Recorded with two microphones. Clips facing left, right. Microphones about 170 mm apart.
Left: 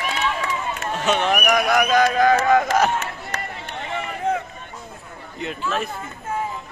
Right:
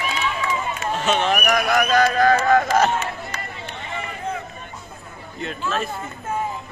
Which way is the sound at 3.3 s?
75° left (ahead or behind).